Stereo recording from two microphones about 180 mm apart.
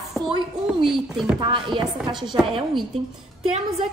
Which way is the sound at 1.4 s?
25° right (ahead or behind).